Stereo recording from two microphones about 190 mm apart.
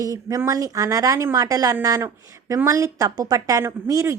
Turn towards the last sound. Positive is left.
turn(degrees=-15)  # may be behind; listen again after turning